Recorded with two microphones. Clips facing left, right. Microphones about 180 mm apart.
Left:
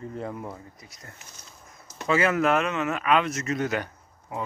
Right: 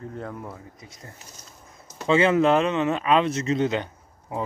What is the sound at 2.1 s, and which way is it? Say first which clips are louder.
Speech: right 4 dB; 30° right (ahead or behind).